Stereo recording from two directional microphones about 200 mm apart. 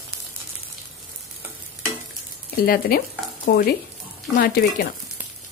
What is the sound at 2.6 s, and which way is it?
Speech, 50° left (ahead or behind).